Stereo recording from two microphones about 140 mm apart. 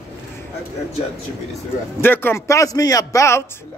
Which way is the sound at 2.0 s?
15° left (ahead or behind).